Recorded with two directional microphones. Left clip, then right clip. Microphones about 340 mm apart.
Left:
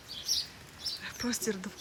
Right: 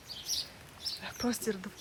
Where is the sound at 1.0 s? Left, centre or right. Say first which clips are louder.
Right 2 dB; centre.